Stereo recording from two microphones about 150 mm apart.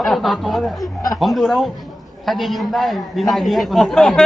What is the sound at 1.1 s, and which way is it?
A man's voice, centre (ahead or behind).